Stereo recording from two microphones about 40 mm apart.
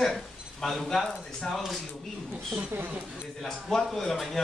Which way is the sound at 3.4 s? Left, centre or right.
Centre.